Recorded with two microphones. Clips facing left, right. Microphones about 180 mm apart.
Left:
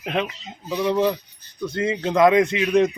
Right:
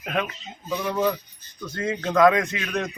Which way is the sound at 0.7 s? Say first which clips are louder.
Left 4 dB; 20° left (ahead or behind).